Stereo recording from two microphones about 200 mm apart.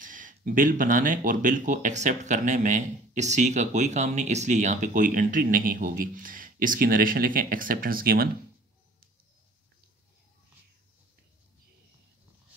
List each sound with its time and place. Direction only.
0.0 s speech: 40° right (ahead or behind)